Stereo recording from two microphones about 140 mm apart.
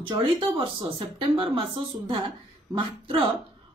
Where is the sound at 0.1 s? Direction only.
35° right (ahead or behind).